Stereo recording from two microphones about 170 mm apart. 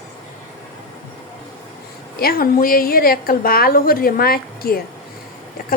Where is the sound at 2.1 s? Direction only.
60° left (ahead or behind).